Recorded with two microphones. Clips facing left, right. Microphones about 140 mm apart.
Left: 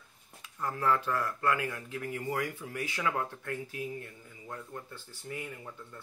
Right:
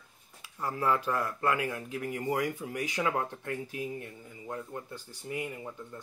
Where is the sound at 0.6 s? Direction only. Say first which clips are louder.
Even; 10° right (ahead or behind).